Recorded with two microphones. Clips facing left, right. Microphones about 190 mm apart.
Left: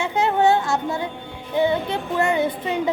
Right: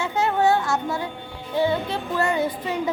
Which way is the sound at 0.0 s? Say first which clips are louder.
Left 2 dB; 20° left (ahead or behind).